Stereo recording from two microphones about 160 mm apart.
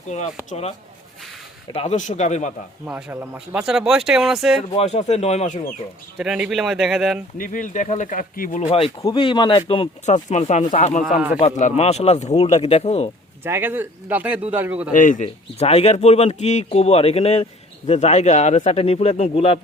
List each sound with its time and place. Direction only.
0.1 s speech: 45° left (ahead or behind)
1.7 s speech: 40° left (ahead or behind)
2.8 s speech: 10° right (ahead or behind)
4.7 s speech: 40° left (ahead or behind)
6.1 s speech: 5° right (ahead or behind)
7.3 s speech: 60° left (ahead or behind)
8.6 s speech: 35° left (ahead or behind)
10.2 s speech: 45° left (ahead or behind)
13.4 s speech: 15° right (ahead or behind)
14.9 s speech: 55° left (ahead or behind); by 19.5 s 35° left (ahead or behind)